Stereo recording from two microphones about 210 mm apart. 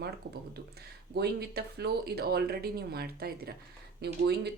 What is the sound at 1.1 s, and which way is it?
Speech, 50° right (ahead or behind).